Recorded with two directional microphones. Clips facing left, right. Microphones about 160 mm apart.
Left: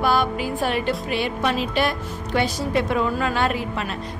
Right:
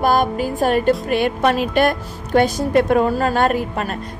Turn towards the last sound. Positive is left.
turn(degrees=-45)  # may be behind; listen again after turning